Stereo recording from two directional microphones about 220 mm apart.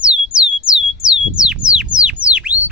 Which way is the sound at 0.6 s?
20° right (ahead or behind).